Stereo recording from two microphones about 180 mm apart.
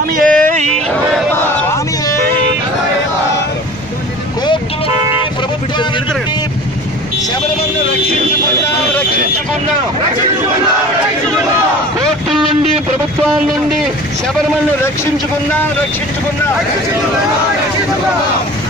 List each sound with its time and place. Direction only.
0.1 s yodeling: 45° right (ahead or behind)
1.3 s a sound: 15° left (ahead or behind)
4.5 s vehicle: 30° left (ahead or behind)